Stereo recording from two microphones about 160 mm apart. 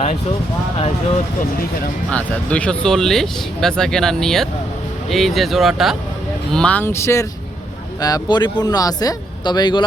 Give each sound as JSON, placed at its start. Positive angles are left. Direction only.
{"t": 2.0, "sound": "speech", "side_deg": 10}